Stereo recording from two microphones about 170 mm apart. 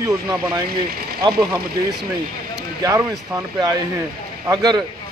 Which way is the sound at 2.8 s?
20° right (ahead or behind).